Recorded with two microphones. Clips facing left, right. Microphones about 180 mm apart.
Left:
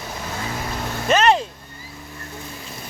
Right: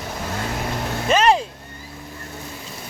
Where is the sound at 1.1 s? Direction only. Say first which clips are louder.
Even; 5° right (ahead or behind).